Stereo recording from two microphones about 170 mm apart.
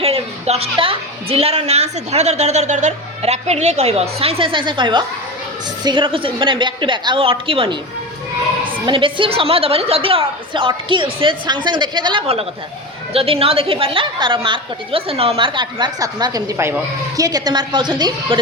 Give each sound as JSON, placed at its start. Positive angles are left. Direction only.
{"t": 0.0, "sound": "a woman's voice", "side_deg": -35}
{"t": 8.9, "sound": "a woman's voice", "side_deg": -30}